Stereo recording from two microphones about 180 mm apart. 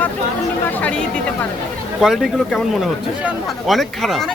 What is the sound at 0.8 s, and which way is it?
Speech, 5° left (ahead or behind).